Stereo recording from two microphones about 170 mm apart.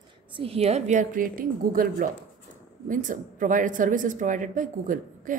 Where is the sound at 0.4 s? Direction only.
35° right (ahead or behind).